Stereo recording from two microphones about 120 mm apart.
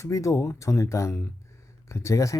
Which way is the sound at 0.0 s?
25° left (ahead or behind).